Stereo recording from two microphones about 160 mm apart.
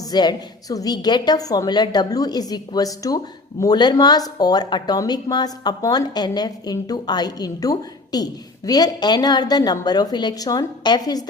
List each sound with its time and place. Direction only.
0.0 s a woman's voice: 25° left (ahead or behind)